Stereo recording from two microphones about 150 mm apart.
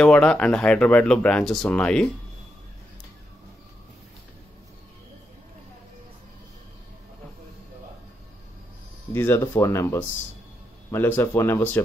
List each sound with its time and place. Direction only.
0.0 s speech: 5° left (ahead or behind)
9.1 s speech: 15° left (ahead or behind)